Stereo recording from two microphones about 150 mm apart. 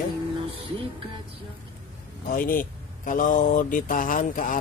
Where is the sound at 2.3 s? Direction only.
65° left (ahead or behind).